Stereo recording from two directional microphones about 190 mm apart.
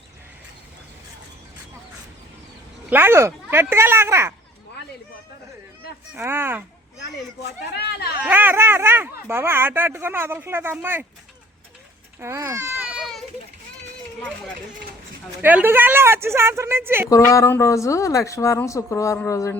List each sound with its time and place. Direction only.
2.9 s speech: 10° right (ahead or behind)
6.1 s speech: 10° right (ahead or behind)
7.8 s speech: 60° left (ahead or behind)
8.2 s speech: 10° right (ahead or behind)
12.2 s speech: 15° right (ahead or behind)
13.0 s children playing: centre (ahead or behind)
14.2 s a woman's voice: 5° left (ahead or behind)
15.4 s speech: 10° right (ahead or behind)
17.1 s a woman's voice: 15° left (ahead or behind)